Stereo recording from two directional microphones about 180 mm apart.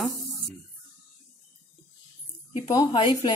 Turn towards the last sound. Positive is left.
turn(degrees=25)  # may be behind; listen again after turning